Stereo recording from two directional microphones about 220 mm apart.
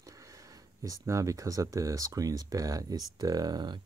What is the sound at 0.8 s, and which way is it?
Speech, 15° right (ahead or behind).